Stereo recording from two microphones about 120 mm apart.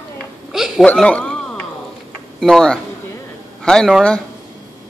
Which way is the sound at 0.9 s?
10° left (ahead or behind).